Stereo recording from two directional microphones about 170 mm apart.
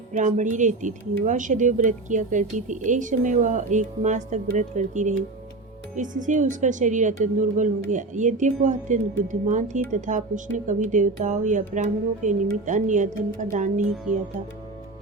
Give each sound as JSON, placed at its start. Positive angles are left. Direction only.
{"t": 0.2, "sound": "speech", "side_deg": -45}